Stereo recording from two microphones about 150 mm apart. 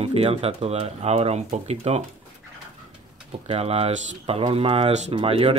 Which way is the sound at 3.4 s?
40° right (ahead or behind).